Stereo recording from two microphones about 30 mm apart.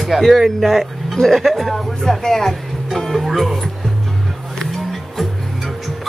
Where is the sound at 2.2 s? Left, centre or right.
Centre.